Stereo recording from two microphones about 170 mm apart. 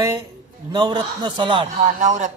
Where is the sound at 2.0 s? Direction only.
45° right (ahead or behind).